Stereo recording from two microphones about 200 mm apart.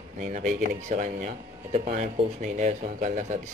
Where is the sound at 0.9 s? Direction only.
40° right (ahead or behind).